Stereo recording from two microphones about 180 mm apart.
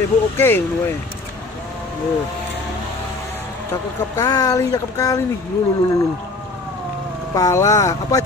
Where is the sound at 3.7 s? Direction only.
15° left (ahead or behind).